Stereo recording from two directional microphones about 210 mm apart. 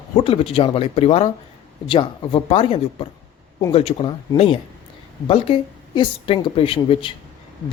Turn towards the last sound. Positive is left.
turn(degrees=25)  # may be behind; listen again after turning